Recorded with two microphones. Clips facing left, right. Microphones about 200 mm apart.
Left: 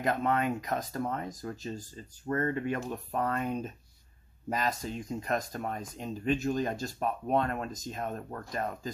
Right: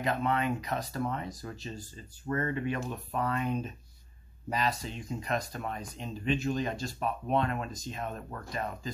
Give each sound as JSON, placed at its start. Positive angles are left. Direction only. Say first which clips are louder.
{"t": 0.0, "sound": "speech", "louder": "left 1 dB", "side_deg": 45}